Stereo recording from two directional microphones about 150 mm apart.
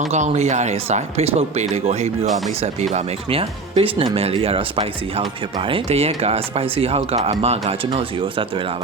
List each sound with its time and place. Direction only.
0.0 s speech: 50° right (ahead or behind)